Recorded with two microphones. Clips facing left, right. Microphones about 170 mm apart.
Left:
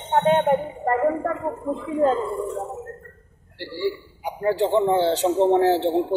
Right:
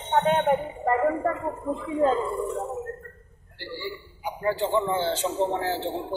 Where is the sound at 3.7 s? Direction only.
70° left (ahead or behind).